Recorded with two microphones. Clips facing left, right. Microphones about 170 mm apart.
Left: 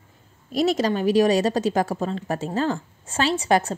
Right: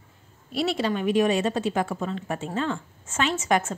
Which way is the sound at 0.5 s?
40° left (ahead or behind).